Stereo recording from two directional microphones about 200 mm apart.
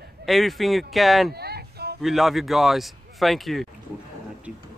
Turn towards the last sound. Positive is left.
turn(degrees=0)  # may be behind; listen again after turning